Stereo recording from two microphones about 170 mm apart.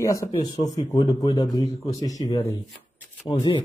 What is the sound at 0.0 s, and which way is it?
A man's voice, 20° left (ahead or behind).